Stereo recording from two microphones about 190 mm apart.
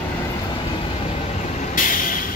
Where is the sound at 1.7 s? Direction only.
45° left (ahead or behind).